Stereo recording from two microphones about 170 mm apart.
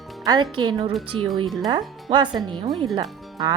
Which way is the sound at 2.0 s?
25° right (ahead or behind).